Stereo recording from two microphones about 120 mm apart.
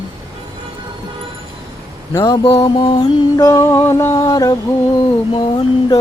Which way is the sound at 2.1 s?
30° left (ahead or behind).